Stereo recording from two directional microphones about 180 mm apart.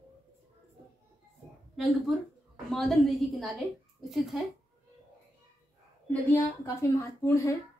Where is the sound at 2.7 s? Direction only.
Centre (ahead or behind).